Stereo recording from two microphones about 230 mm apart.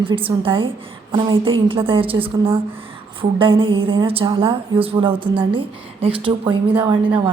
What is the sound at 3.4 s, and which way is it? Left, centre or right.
A woman's voice, right.